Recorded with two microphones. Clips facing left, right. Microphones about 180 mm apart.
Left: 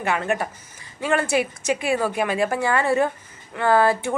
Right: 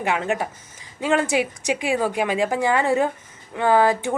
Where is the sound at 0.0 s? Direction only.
15° right (ahead or behind).